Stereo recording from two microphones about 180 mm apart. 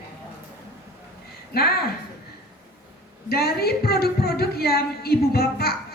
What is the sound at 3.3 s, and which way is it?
A woman's voice, 60° left (ahead or behind).